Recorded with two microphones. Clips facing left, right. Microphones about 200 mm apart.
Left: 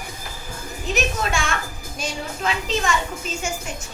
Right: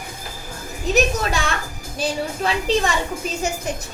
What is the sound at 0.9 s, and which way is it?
Music, 35° right (ahead or behind).